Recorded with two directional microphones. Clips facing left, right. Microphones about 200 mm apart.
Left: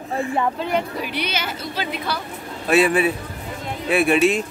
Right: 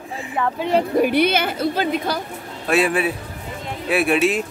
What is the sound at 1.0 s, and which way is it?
A woman's voice, 50° right (ahead or behind).